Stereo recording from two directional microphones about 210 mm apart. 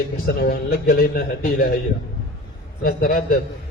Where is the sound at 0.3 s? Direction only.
45° left (ahead or behind).